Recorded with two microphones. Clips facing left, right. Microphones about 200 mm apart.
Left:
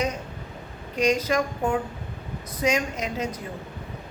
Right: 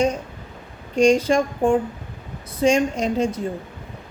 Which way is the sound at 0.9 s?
30° right (ahead or behind).